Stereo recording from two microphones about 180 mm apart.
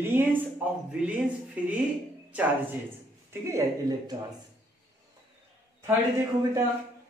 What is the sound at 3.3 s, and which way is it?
Speech, 15° right (ahead or behind).